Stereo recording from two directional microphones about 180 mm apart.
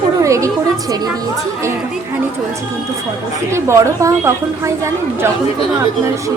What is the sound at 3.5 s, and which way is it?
A woman's voice, 15° right (ahead or behind).